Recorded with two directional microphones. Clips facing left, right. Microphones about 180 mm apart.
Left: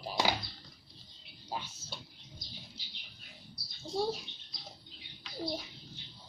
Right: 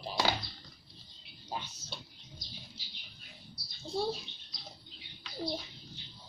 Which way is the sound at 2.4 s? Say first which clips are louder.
Even; 55° left (ahead or behind).